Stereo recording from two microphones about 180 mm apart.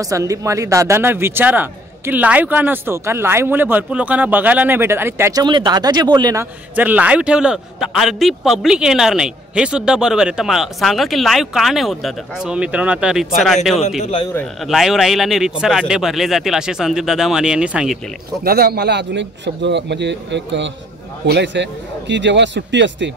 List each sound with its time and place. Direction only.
0.0 s speech: 20° right (ahead or behind)
6.7 s a man's voice: 10° right (ahead or behind)
14.3 s a man's voice: centre (ahead or behind)
18.4 s a man's voice: 60° right (ahead or behind); by 23.1 s 80° right